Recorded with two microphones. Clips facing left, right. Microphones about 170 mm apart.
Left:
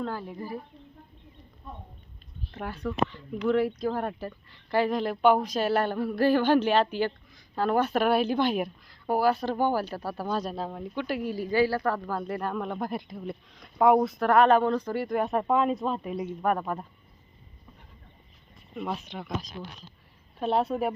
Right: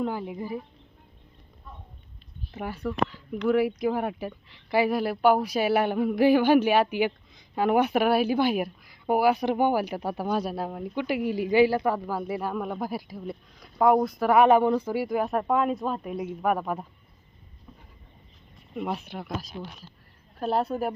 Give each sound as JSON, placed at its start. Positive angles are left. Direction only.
{"t": 0.0, "sound": "speech", "side_deg": -15}
{"t": 2.5, "sound": "speech", "side_deg": -5}
{"t": 18.8, "sound": "a woman's voice", "side_deg": -10}